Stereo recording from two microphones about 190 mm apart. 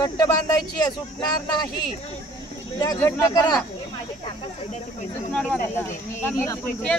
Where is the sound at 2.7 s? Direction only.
20° left (ahead or behind).